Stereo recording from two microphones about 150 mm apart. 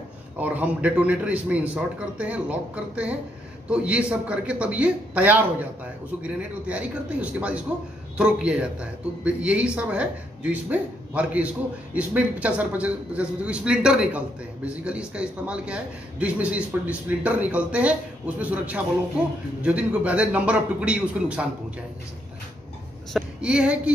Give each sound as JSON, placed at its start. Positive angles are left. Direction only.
{"t": 0.4, "sound": "speech", "side_deg": -10}
{"t": 23.1, "sound": "speech", "side_deg": -5}